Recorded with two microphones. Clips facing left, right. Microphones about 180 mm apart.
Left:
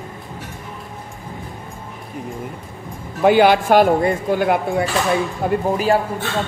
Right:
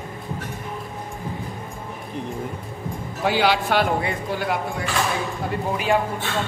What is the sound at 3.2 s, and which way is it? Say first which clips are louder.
Speech: left 8 dB; 55° left (ahead or behind).